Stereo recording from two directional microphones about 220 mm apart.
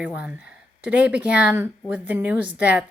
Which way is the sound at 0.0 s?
5° right (ahead or behind).